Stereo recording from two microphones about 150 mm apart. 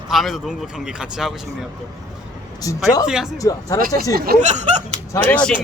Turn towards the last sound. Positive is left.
turn(degrees=10)  # may be behind; listen again after turning